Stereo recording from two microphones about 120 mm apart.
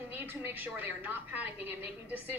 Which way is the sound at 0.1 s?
15° right (ahead or behind).